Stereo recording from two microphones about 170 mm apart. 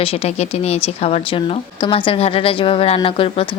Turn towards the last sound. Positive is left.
turn(degrees=30)  # may be behind; listen again after turning